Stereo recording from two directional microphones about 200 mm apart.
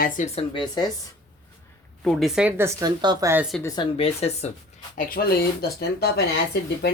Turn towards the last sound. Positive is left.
turn(degrees=55)  # may be behind; listen again after turning